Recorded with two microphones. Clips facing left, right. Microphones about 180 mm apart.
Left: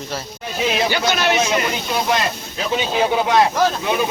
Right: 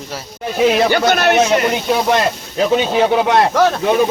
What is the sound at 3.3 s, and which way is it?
Speech, 60° right (ahead or behind).